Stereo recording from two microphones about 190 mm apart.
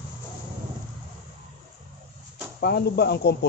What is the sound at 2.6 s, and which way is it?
Speech, 55° left (ahead or behind).